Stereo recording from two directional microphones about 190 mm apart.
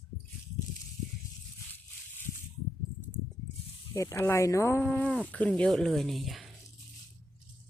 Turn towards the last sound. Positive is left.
turn(degrees=0)  # may be behind; listen again after turning